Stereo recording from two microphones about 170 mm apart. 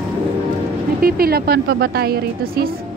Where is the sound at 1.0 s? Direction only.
60° right (ahead or behind).